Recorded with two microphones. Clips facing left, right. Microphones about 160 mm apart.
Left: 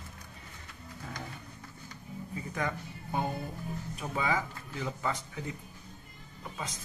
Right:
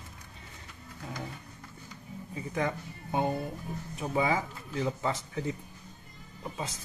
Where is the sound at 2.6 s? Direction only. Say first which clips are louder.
Right 4 dB; 20° right (ahead or behind).